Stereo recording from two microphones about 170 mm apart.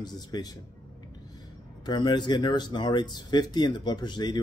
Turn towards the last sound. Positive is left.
turn(degrees=25)  # may be behind; listen again after turning